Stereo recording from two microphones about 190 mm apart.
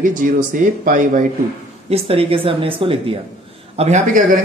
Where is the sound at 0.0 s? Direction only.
45° right (ahead or behind).